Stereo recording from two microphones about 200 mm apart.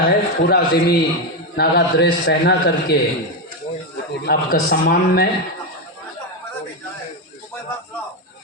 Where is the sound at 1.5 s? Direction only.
55° left (ahead or behind).